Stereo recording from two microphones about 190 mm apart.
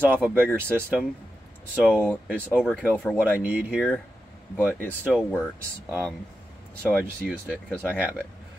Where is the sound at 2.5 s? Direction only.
5° right (ahead or behind).